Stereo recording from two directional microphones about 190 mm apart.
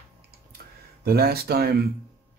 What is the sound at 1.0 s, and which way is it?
Speech, 55° right (ahead or behind).